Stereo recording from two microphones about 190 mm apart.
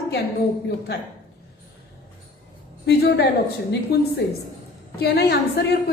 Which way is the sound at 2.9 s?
55° left (ahead or behind).